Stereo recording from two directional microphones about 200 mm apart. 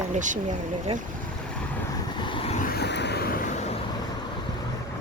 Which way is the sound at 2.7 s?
55° left (ahead or behind).